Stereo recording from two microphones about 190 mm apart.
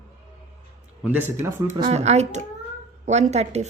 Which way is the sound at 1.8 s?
35° right (ahead or behind).